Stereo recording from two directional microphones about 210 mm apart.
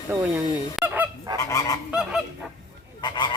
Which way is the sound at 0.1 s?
10° right (ahead or behind).